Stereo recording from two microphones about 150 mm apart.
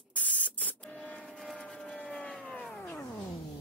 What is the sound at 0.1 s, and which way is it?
Spray, 10° left (ahead or behind).